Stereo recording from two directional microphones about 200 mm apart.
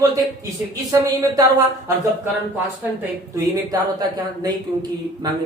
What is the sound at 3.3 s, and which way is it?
Speech, 20° right (ahead or behind).